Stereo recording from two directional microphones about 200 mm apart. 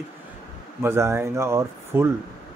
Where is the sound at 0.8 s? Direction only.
10° right (ahead or behind).